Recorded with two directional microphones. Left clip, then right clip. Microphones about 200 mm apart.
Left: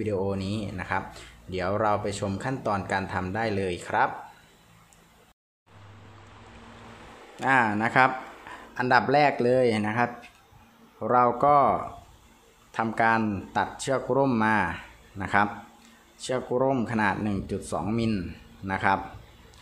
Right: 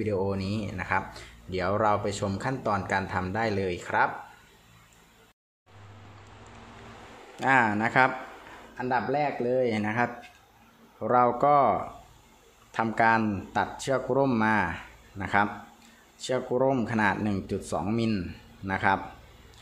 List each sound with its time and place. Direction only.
0.0 s speech: centre (ahead or behind)
7.3 s speech: centre (ahead or behind)
8.7 s speech: 20° left (ahead or behind)
9.7 s speech: 5° left (ahead or behind)